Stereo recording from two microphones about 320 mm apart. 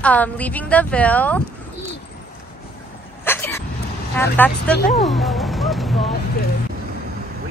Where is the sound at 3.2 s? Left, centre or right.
Centre.